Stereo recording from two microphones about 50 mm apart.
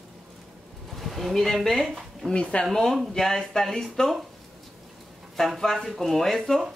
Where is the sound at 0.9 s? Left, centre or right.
Centre.